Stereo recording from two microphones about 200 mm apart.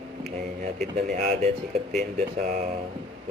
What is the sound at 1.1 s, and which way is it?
Speech, 35° right (ahead or behind).